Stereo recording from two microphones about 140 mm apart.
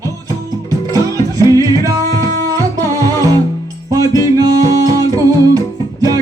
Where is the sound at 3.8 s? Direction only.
25° right (ahead or behind).